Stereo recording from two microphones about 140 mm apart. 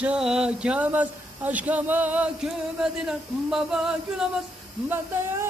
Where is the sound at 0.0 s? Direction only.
5° right (ahead or behind).